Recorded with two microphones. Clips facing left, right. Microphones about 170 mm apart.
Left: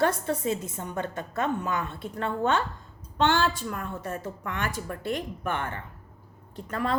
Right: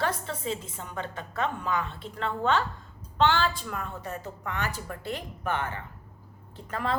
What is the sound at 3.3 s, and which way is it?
Speech, 45° left (ahead or behind).